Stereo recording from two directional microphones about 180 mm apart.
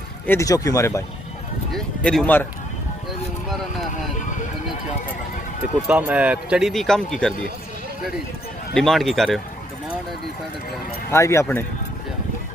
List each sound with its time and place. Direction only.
0.3 s speech: 20° left (ahead or behind)
1.7 s speech: centre (ahead or behind)
3.4 s speech: centre (ahead or behind)
5.9 s speech: 10° right (ahead or behind)
8.7 s speech: centre (ahead or behind)
11.1 s speech: 15° left (ahead or behind)